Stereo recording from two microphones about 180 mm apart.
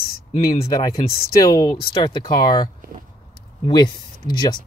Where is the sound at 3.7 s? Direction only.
20° left (ahead or behind).